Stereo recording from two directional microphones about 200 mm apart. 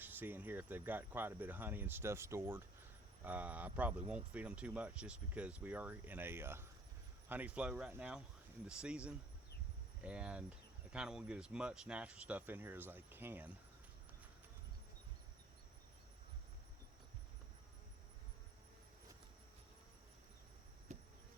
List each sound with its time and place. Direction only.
0.0 s speech: 10° right (ahead or behind)
20.9 s insect: 35° right (ahead or behind)